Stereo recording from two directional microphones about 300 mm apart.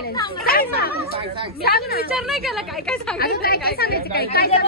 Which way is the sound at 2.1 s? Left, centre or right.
Centre.